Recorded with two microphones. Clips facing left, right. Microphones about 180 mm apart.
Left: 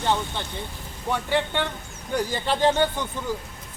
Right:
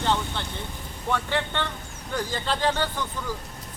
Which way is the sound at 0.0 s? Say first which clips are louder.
Left 1 dB; 15° left (ahead or behind).